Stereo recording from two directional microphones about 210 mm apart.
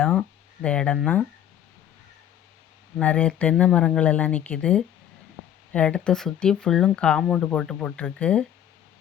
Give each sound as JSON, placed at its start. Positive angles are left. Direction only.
{"t": 0.0, "sound": "speech", "side_deg": 5}
{"t": 3.0, "sound": "speech", "side_deg": 5}